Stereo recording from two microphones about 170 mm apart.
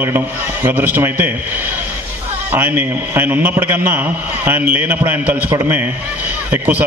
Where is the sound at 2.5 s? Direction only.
10° right (ahead or behind).